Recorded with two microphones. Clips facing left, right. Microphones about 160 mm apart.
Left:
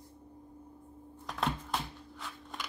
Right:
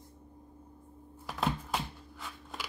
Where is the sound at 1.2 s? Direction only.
5° right (ahead or behind).